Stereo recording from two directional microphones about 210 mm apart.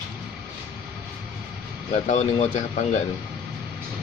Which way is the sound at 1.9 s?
30° left (ahead or behind).